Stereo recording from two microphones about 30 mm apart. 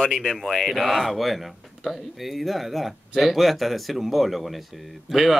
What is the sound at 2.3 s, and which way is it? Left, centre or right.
Speech, centre.